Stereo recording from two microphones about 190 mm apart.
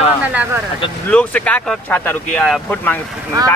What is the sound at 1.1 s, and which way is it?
Speech, 5° left (ahead or behind).